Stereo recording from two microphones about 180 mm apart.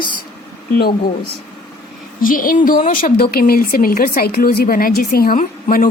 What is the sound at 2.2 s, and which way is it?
Speech, 50° left (ahead or behind).